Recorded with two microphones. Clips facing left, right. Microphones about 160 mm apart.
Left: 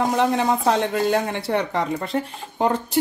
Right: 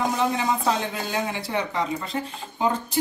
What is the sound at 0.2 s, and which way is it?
Speech, 65° left (ahead or behind).